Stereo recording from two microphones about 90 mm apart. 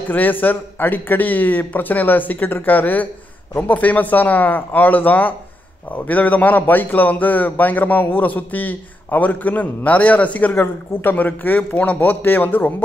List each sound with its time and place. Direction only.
0.1 s a man's voice: 20° left (ahead or behind)